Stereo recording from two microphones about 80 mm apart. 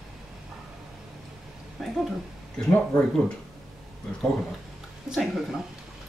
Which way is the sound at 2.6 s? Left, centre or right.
Centre.